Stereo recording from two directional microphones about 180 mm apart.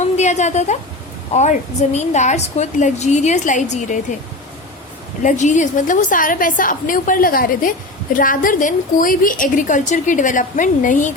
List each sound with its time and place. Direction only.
0.0 s a sound: 40° left (ahead or behind)
1.3 s a woman's voice: 40° left (ahead or behind)
5.2 s a woman's voice: 45° left (ahead or behind)